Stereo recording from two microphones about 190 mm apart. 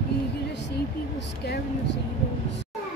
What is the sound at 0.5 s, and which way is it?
Speech, 65° left (ahead or behind).